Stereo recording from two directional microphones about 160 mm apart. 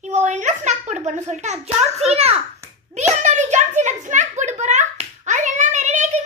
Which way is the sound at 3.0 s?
45° right (ahead or behind).